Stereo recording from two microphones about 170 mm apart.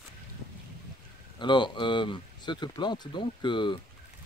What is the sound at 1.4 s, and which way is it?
Speech, 25° left (ahead or behind).